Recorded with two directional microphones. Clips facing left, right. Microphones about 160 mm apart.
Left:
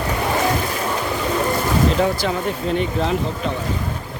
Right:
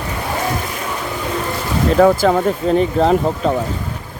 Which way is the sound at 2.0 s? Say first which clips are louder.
Right 8 dB; 50° right (ahead or behind).